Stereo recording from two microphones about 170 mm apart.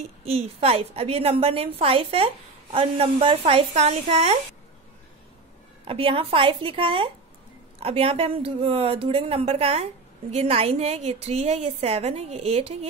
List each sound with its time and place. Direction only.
0.2 s a woman's voice: 35° right (ahead or behind)
5.9 s a woman's voice: 35° right (ahead or behind)